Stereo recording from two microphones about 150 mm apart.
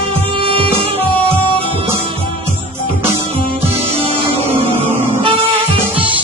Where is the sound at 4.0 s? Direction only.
40° right (ahead or behind).